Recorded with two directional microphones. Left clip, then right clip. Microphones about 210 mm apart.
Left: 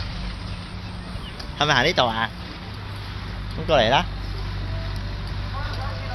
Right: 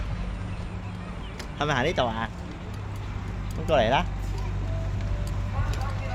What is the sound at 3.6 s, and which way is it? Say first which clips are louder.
Speech: left 4 dB; 35° left (ahead or behind).